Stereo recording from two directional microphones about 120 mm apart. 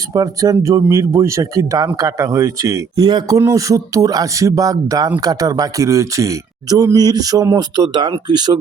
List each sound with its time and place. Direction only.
0.1 s speech: 30° right (ahead or behind)
7.8 s speech: 40° right (ahead or behind)